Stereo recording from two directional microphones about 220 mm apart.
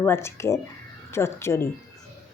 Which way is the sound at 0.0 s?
10° left (ahead or behind).